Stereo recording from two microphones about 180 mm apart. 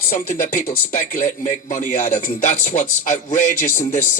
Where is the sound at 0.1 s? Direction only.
45° left (ahead or behind).